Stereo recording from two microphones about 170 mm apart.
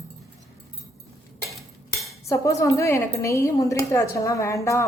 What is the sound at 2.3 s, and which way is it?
A woman's voice, 20° left (ahead or behind).